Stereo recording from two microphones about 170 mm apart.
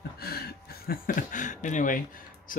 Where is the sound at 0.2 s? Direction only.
65° left (ahead or behind).